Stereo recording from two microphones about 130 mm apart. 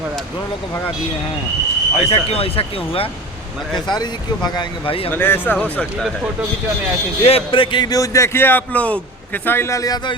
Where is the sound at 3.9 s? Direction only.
30° left (ahead or behind).